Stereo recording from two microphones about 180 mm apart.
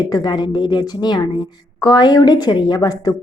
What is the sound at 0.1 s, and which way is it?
Speech, 25° left (ahead or behind).